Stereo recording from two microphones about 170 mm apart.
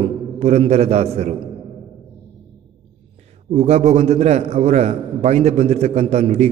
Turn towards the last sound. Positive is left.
turn(degrees=-40)  # may be behind; listen again after turning